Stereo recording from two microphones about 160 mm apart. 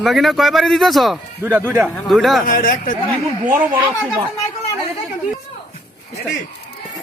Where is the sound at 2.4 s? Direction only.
60° left (ahead or behind).